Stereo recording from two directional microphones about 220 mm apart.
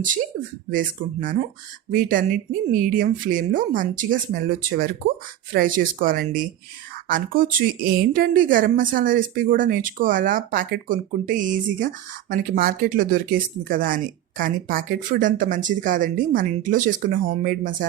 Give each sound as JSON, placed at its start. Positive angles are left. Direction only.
{"t": 0.7, "sound": "a woman's voice", "side_deg": -40}